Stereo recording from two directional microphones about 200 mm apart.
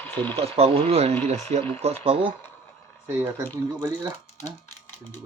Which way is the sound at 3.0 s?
10° right (ahead or behind).